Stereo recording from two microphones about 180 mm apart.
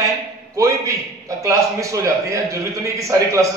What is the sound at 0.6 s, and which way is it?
A man's voice, 20° right (ahead or behind).